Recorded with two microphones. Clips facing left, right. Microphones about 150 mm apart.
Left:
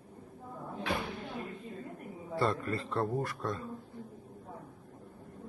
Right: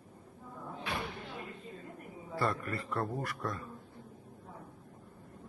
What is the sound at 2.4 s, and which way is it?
A man's voice, 25° left (ahead or behind).